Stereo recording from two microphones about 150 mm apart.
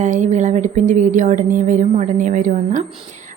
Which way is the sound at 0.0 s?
55° right (ahead or behind).